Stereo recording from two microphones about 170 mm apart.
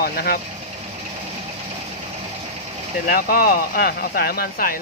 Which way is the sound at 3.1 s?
55° left (ahead or behind).